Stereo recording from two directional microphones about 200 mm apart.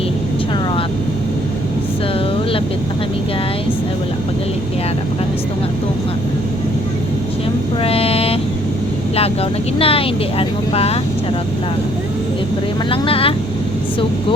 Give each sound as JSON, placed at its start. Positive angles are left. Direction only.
{"t": 7.8, "sound": "vehicle", "side_deg": 30}
{"t": 9.1, "sound": "speech", "side_deg": 30}
{"t": 12.9, "sound": "speech", "side_deg": 30}